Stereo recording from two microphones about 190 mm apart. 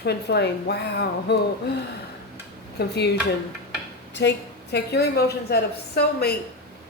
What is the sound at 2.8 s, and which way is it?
Speech, 60° left (ahead or behind).